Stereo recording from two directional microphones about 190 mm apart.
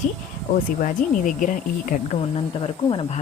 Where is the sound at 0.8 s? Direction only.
45° left (ahead or behind).